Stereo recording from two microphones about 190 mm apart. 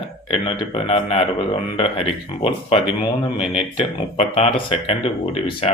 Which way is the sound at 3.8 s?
30° left (ahead or behind).